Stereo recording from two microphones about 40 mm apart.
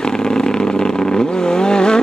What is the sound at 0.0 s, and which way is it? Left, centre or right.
Vehicle, centre.